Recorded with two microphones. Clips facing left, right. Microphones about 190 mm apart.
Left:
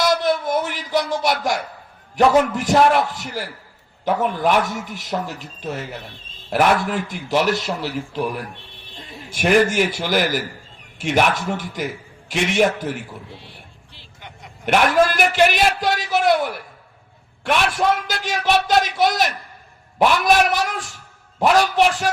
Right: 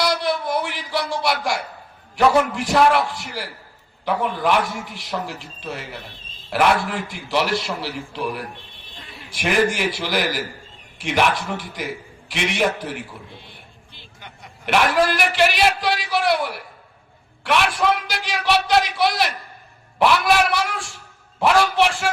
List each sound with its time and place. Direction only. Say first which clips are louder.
0.0 s a man's voice: left 3 dB; 45° left (ahead or behind)
9.3 s a man's voice: left 4 dB; 45° left (ahead or behind)
14.7 s a man's voice: left 2 dB; 45° left (ahead or behind)
17.9 s a man's voice: left 2 dB; 45° left (ahead or behind)
21.8 s music: left 2 dB; 40° left (ahead or behind)